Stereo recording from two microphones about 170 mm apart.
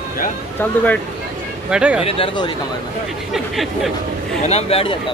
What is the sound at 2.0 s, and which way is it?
Speech, 30° left (ahead or behind).